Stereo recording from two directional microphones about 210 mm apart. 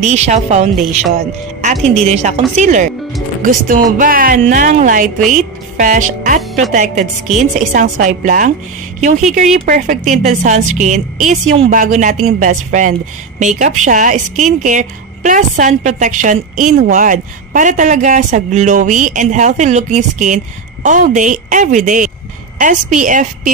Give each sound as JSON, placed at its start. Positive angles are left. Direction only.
{"t": 0.0, "sound": "a woman's voice", "side_deg": -35}